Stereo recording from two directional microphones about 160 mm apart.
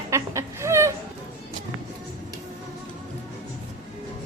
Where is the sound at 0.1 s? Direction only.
20° right (ahead or behind).